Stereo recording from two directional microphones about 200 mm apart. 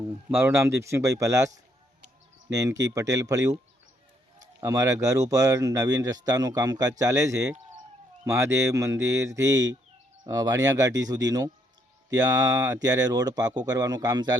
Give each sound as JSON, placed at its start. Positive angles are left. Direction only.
{"t": 0.3, "sound": "speech", "side_deg": -10}
{"t": 4.6, "sound": "speech", "side_deg": -15}